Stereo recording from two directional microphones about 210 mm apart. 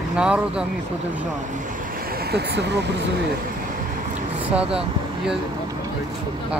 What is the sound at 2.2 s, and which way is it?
Speech, 50° right (ahead or behind).